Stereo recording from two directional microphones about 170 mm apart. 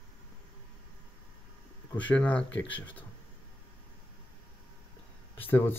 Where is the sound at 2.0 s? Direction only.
10° left (ahead or behind).